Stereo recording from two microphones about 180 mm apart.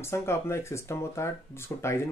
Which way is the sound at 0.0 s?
15° left (ahead or behind).